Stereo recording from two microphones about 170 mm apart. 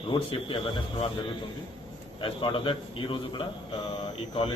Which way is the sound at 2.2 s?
30° left (ahead or behind).